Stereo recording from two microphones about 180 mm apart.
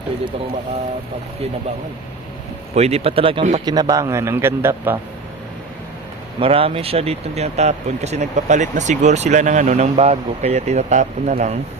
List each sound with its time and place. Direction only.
2.7 s speech: 35° right (ahead or behind)
3.7 s a man's voice: 20° right (ahead or behind)
6.4 s speech: 30° right (ahead or behind)